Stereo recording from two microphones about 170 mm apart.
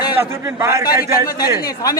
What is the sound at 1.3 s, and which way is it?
Speech, 60° left (ahead or behind).